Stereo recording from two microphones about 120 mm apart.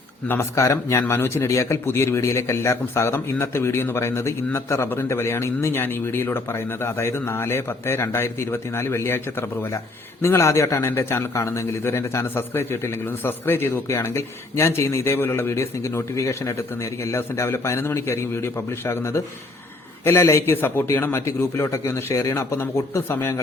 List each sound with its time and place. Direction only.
0.3 s a man's voice: 25° left (ahead or behind)